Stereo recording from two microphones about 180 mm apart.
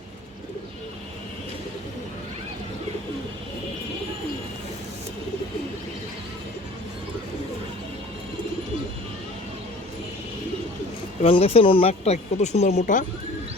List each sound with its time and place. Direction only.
11.2 s speech: 30° left (ahead or behind)